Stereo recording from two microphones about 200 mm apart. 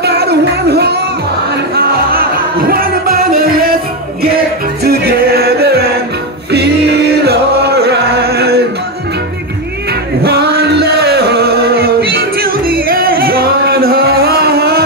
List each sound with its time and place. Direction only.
0.0 s music: 55° right (ahead or behind)
4.8 s music: 50° right (ahead or behind)
10.2 s music: 55° right (ahead or behind)